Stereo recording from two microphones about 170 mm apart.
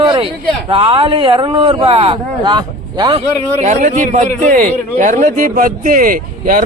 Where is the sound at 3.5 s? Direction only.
45° right (ahead or behind).